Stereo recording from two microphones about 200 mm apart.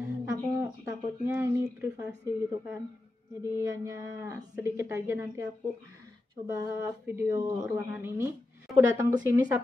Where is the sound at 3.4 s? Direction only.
15° right (ahead or behind).